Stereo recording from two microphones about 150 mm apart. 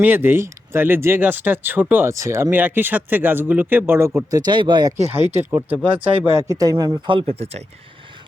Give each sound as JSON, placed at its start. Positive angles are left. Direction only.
{"t": 0.0, "sound": "speech", "side_deg": -15}
{"t": 5.3, "sound": "speech", "side_deg": -15}
{"t": 5.8, "sound": "speech", "side_deg": -35}
{"t": 6.3, "sound": "speech", "side_deg": -25}